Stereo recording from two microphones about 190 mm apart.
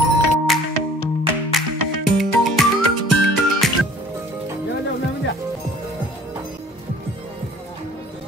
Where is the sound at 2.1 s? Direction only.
Centre (ahead or behind).